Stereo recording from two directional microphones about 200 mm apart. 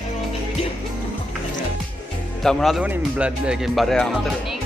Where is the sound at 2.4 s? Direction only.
Centre (ahead or behind).